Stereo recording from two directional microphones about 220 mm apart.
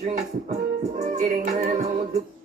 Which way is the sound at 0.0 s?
35° right (ahead or behind).